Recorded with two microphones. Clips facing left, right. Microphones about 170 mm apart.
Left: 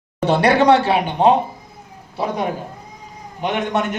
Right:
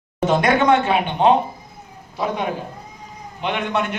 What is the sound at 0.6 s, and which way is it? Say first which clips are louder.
A man's voice: left 3 dB; 35° left (ahead or behind).